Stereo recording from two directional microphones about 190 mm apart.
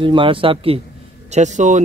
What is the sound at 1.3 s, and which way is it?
Speech, 40° right (ahead or behind).